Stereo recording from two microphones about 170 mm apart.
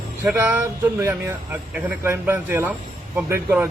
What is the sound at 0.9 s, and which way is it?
Speech, 15° right (ahead or behind).